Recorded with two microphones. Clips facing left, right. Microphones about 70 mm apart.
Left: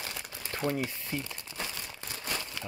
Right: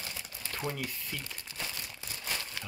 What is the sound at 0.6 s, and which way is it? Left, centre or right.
Speech, centre.